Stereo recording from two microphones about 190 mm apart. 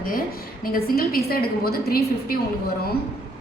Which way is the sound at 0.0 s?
50° left (ahead or behind).